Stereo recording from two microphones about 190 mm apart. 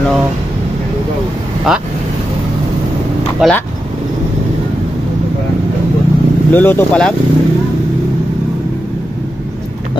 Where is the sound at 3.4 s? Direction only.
Centre (ahead or behind).